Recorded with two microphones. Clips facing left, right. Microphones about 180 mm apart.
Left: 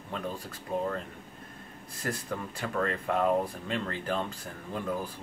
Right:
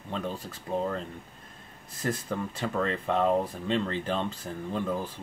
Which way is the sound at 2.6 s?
25° right (ahead or behind).